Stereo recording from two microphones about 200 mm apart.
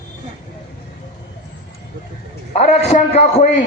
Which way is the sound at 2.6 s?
35° left (ahead or behind).